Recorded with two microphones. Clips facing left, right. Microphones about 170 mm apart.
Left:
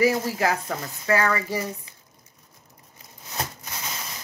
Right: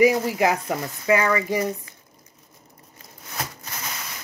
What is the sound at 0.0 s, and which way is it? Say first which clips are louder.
Speech: right 4 dB; 15° right (ahead or behind).